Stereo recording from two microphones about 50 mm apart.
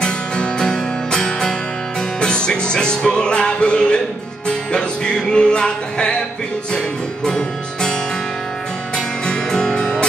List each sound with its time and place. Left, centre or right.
0.0 s music: centre
7.2 s music: centre